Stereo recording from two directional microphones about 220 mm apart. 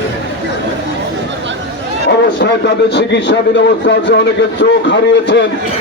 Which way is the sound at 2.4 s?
50° left (ahead or behind).